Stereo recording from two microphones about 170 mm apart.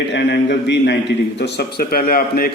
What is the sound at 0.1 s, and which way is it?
A man's voice, 80° left.